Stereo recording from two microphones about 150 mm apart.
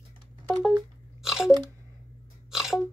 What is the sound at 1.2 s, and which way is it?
Crunch, 5° right (ahead or behind).